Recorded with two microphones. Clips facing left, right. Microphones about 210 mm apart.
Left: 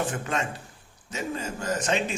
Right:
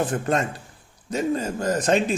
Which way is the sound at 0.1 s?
40° right (ahead or behind).